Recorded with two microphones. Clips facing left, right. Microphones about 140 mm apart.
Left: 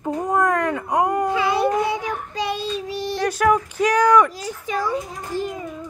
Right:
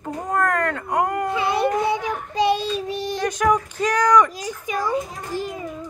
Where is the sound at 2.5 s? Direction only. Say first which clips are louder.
Right 1 dB; 55° right (ahead or behind).